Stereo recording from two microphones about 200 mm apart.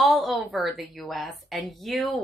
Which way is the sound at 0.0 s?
Centre (ahead or behind).